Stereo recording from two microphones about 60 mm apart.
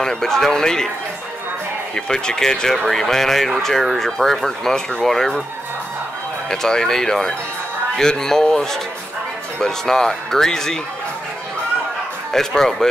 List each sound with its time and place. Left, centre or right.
0.0 s speech: centre
2.0 s speech: centre
6.5 s speech: centre
12.3 s speech: centre